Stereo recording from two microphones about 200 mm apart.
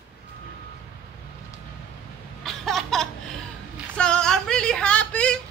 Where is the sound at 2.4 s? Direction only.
Centre (ahead or behind).